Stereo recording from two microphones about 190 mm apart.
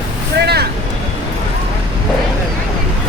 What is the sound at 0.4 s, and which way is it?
Vehicle, 55° right (ahead or behind).